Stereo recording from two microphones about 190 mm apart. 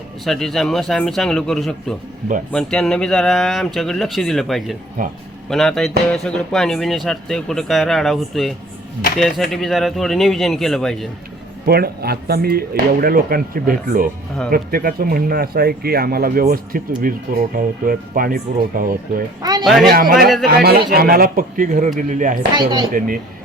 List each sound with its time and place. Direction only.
0.3 s speech: centre (ahead or behind)
5.0 s speech: 45° right (ahead or behind)
5.5 s speech: centre (ahead or behind)
11.6 s speech: 55° right (ahead or behind)
19.4 s speech: 20° right (ahead or behind)
19.6 s speech: centre (ahead or behind)
19.9 s speech: 50° right (ahead or behind)
20.2 s speech: centre (ahead or behind)
20.6 s speech: 55° right (ahead or behind)
22.5 s speech: 25° right (ahead or behind)